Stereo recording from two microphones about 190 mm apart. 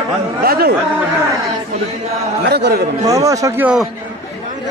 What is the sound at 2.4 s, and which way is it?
Speech, 60° right (ahead or behind).